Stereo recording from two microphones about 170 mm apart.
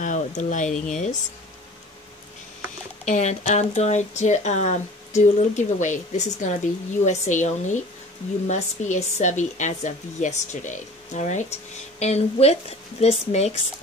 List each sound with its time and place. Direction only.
0.0 s speech: 45° left (ahead or behind)
3.1 s speech: 45° left (ahead or behind)